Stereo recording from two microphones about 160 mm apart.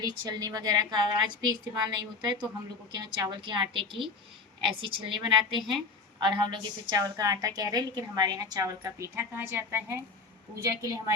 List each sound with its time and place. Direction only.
0.0 s a woman's voice: 25° right (ahead or behind)